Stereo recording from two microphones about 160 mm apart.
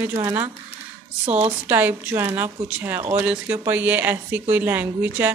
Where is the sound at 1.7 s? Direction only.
10° right (ahead or behind).